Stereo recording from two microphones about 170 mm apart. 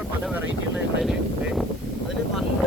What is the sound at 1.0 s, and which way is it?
Speech, centre (ahead or behind).